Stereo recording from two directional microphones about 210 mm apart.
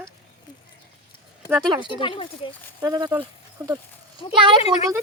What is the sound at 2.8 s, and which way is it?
Speech, 20° right (ahead or behind).